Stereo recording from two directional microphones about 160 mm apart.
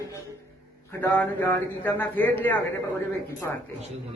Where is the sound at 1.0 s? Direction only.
15° left (ahead or behind).